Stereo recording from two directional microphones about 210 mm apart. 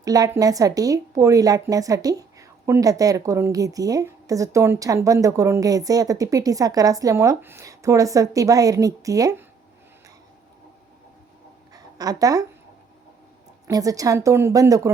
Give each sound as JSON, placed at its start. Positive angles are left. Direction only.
{"t": 0.0, "sound": "speech", "side_deg": -15}
{"t": 11.7, "sound": "a sound", "side_deg": -15}
{"t": 13.7, "sound": "speech", "side_deg": -15}